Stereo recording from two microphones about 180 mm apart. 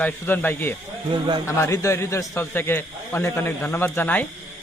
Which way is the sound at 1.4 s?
15° left (ahead or behind).